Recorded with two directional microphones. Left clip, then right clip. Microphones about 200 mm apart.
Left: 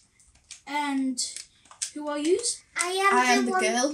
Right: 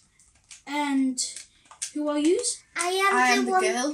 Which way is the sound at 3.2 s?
50° left (ahead or behind).